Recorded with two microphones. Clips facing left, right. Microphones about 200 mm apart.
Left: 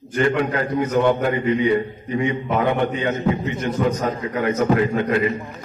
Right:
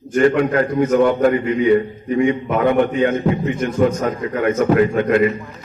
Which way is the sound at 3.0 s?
50° right (ahead or behind).